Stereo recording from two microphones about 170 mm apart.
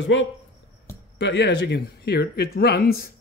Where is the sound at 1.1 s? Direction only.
90° left; by 3.1 s 60° left (ahead or behind).